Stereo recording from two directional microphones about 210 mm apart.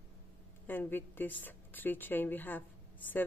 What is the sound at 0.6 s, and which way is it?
A woman's voice, 10° left (ahead or behind).